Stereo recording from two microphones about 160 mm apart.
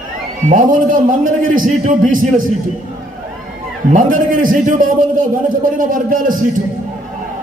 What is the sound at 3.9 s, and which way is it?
A man's voice, 60° right (ahead or behind).